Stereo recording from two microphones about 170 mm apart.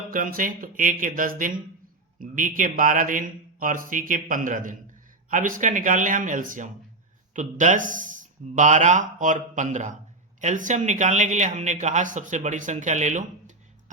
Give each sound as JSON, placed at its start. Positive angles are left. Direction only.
{"t": 0.1, "sound": "speech", "side_deg": -50}